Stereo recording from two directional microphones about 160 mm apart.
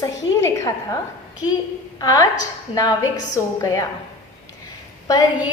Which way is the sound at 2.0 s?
20° left (ahead or behind).